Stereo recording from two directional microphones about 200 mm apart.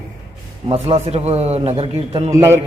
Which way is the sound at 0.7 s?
30° right (ahead or behind).